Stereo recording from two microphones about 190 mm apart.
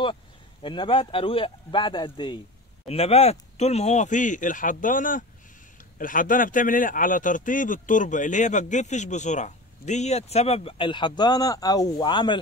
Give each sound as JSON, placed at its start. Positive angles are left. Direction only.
{"t": 0.0, "sound": "a man's voice", "side_deg": 25}